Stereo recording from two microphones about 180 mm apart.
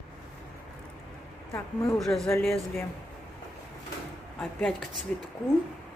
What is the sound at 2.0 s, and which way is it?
Speech, centre (ahead or behind).